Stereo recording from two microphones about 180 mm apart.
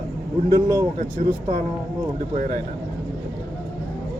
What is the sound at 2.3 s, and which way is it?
Speech, 50° right (ahead or behind).